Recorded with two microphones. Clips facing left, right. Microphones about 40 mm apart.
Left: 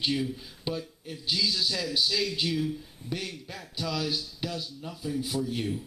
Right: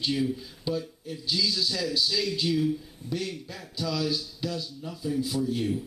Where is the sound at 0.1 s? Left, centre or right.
Centre.